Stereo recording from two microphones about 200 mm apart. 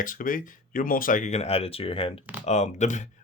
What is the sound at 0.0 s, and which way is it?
Speech, 45° left (ahead or behind).